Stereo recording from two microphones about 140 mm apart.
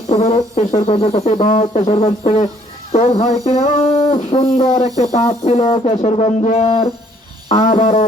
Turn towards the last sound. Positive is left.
turn(degrees=55)  # may be behind; listen again after turning